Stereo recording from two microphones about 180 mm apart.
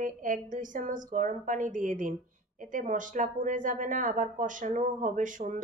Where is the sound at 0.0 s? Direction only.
45° right (ahead or behind).